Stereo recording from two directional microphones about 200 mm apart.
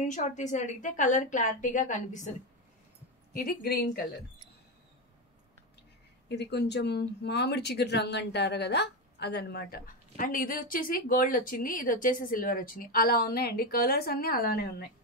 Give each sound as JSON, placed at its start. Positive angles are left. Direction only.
{"t": 0.0, "sound": "a woman's voice", "side_deg": 35}
{"t": 3.3, "sound": "speech", "side_deg": 50}
{"t": 6.2, "sound": "speech", "side_deg": 60}